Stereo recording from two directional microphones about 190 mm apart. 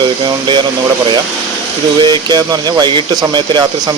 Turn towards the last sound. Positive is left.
turn(degrees=-20)  # may be behind; listen again after turning